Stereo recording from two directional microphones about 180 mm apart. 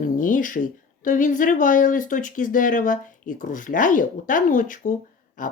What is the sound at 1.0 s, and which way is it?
Speech, 45° left (ahead or behind).